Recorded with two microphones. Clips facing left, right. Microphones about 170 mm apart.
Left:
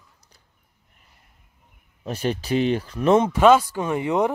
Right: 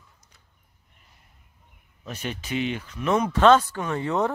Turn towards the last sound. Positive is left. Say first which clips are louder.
# left 3 dB
turn(degrees=15)  # may be behind; listen again after turning